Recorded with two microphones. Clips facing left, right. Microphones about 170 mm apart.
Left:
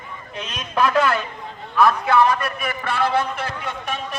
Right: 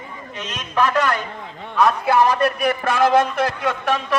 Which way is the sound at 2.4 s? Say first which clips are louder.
Right 8 dB; 45° right (ahead or behind).